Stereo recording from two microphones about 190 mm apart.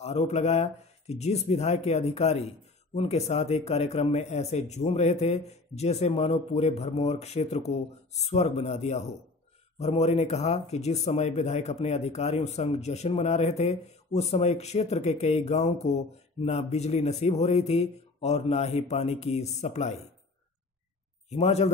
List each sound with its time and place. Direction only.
0.0 s speech: 35° left (ahead or behind)
21.3 s speech: 35° left (ahead or behind)